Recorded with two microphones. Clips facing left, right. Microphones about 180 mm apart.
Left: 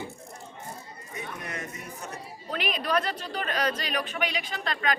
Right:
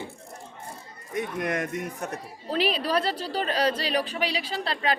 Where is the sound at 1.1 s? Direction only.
60° right (ahead or behind).